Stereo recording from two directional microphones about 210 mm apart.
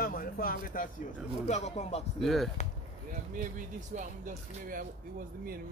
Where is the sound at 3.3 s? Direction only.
35° right (ahead or behind).